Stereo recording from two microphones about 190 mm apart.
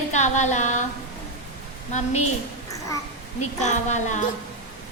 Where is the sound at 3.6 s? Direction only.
40° left (ahead or behind).